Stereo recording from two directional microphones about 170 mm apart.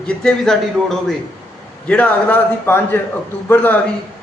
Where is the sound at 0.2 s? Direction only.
5° left (ahead or behind).